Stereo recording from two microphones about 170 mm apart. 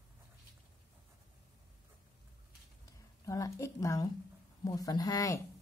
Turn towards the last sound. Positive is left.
turn(degrees=20)  # may be behind; listen again after turning